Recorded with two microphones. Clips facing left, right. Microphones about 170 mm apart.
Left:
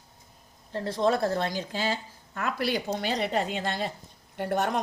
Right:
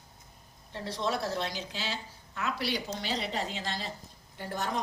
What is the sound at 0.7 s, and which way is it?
A woman's voice, 50° left (ahead or behind).